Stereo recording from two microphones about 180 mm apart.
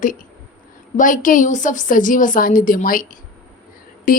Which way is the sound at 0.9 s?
45° left (ahead or behind).